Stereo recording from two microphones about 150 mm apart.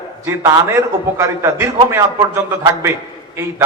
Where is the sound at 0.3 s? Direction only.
20° right (ahead or behind).